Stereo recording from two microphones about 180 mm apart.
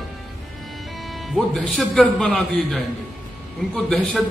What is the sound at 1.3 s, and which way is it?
A man's voice, centre (ahead or behind).